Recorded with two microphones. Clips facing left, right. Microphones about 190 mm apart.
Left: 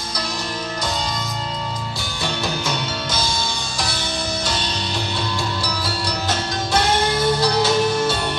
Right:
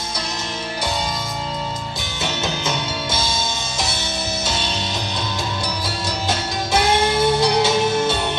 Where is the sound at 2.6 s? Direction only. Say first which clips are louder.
Right 1 dB; 25° right (ahead or behind).